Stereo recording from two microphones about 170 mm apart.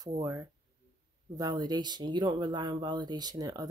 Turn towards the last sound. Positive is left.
turn(degrees=-20)  # may be behind; listen again after turning